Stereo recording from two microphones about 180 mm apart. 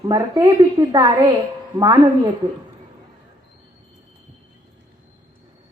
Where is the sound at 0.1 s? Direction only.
20° right (ahead or behind).